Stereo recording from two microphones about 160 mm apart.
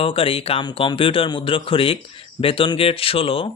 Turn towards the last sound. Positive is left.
turn(degrees=35)  # may be behind; listen again after turning